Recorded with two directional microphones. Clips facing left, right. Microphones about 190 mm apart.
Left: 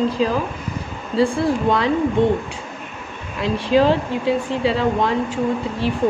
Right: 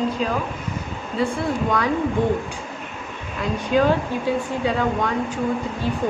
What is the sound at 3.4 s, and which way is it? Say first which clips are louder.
Speech: left 3 dB; 30° left (ahead or behind).